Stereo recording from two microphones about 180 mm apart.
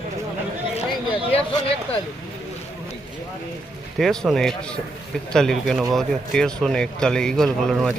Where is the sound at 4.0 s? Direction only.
Centre (ahead or behind).